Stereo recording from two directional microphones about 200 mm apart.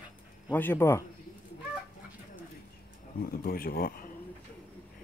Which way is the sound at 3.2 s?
45° left (ahead or behind).